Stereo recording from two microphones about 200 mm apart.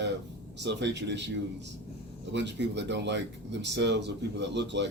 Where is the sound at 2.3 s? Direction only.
60° right (ahead or behind).